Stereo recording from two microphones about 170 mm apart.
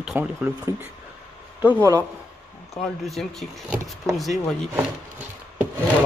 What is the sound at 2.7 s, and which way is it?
Speech, centre (ahead or behind).